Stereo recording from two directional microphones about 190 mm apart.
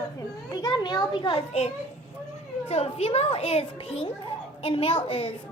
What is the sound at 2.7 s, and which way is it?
A child's voice, 35° left (ahead or behind).